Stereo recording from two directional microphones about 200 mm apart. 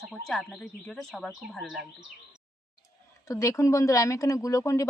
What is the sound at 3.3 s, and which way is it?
Speech, 15° left (ahead or behind).